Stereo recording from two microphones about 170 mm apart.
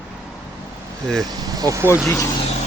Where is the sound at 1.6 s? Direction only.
20° right (ahead or behind).